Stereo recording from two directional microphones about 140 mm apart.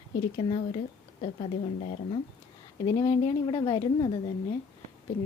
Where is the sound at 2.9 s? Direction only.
35° left (ahead or behind).